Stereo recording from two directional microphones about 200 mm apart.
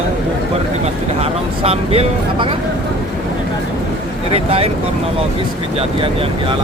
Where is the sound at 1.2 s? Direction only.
30° right (ahead or behind).